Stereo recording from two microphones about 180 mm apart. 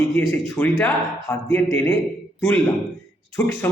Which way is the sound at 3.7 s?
15° left (ahead or behind).